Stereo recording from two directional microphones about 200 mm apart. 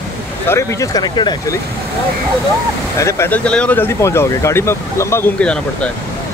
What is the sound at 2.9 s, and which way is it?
Speech, 15° left (ahead or behind).